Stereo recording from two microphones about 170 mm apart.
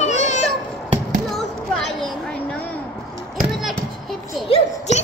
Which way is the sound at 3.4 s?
Centre (ahead or behind).